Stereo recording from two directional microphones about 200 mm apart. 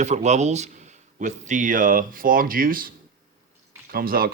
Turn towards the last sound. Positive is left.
turn(degrees=-45)  # may be behind; listen again after turning